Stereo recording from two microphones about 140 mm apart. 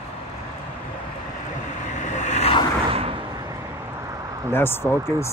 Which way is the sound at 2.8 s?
40° right (ahead or behind).